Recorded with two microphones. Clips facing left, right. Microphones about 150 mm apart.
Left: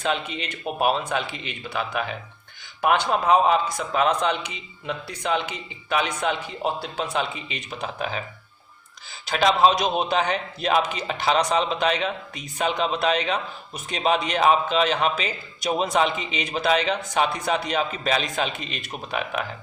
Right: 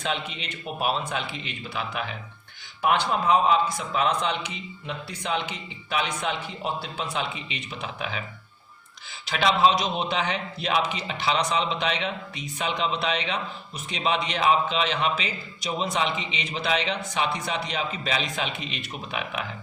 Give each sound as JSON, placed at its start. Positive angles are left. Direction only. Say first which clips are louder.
{"t": 0.6, "sound": "a man's voice", "louder": "left 4 dB", "side_deg": 50}
{"t": 5.9, "sound": "a man's voice", "louder": "left 4 dB", "side_deg": 50}
{"t": 9.2, "sound": "a man's voice", "louder": "left 3 dB", "side_deg": 45}